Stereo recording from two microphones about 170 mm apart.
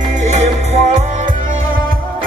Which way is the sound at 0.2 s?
40° right (ahead or behind).